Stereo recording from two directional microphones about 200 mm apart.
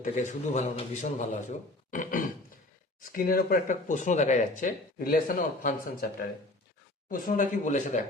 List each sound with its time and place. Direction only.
0.0 s a man's voice: 35° left (ahead or behind)
1.9 s a sound: 40° left (ahead or behind)
3.0 s a man's voice: 45° left (ahead or behind)